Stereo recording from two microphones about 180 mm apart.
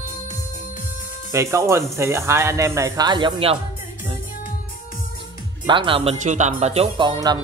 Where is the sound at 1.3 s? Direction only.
15° right (ahead or behind).